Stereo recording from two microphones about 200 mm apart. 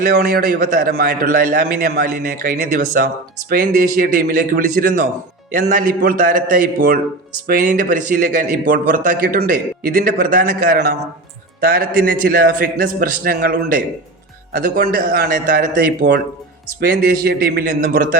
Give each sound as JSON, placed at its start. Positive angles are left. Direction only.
{"t": 0.1, "sound": "a man's voice", "side_deg": -50}